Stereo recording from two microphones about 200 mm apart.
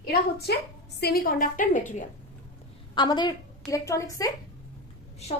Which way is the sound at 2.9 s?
20° left (ahead or behind).